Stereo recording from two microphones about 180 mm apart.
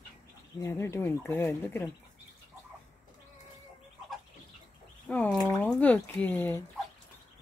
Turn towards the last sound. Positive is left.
turn(degrees=10)  # may be behind; listen again after turning